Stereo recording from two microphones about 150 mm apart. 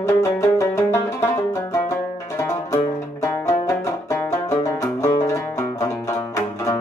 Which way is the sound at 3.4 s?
20° left (ahead or behind).